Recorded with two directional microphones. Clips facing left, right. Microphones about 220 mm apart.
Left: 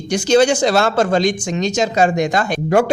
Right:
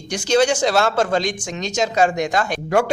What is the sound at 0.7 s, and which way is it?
Speech, 5° left (ahead or behind).